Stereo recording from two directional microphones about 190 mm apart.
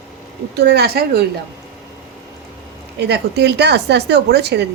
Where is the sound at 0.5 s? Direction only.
60° right (ahead or behind).